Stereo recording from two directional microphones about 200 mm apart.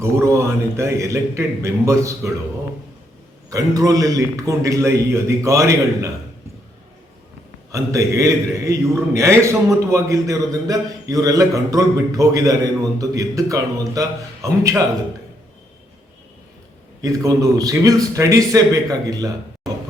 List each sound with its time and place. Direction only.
0.0 s a man's voice: 15° right (ahead or behind)
3.5 s a man's voice: 15° right (ahead or behind)
7.7 s a man's voice: 15° right (ahead or behind)
17.0 s a man's voice: 15° right (ahead or behind)